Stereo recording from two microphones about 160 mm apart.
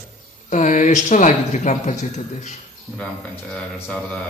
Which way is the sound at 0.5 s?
50° left (ahead or behind).